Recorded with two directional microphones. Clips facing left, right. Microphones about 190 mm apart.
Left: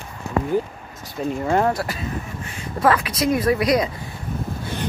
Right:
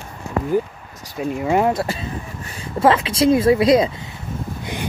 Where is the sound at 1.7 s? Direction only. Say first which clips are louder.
Right 2 dB; 25° right (ahead or behind).